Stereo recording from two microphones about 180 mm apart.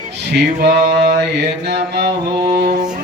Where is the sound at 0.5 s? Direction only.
65° right (ahead or behind).